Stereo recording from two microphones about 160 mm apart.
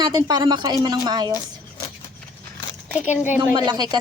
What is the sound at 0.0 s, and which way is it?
Speech, 25° right (ahead or behind).